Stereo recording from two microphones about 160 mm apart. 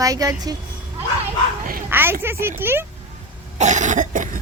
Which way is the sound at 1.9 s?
15° right (ahead or behind).